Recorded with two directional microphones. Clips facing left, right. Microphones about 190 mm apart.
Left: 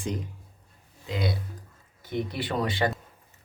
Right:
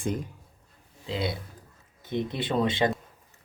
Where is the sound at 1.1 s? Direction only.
25° right (ahead or behind).